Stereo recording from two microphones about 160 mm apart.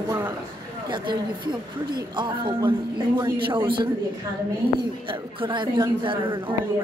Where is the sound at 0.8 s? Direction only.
30° right (ahead or behind).